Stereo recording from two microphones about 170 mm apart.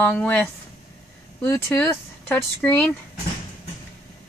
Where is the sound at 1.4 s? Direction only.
10° left (ahead or behind).